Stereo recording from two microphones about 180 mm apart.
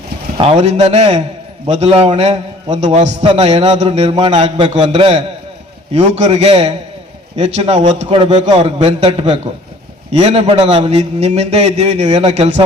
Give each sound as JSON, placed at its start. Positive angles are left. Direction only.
{"t": 0.3, "sound": "a man's voice", "side_deg": -35}
{"t": 8.1, "sound": "a man's voice", "side_deg": -25}